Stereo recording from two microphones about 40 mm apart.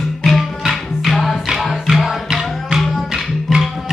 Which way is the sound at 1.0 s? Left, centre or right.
Centre.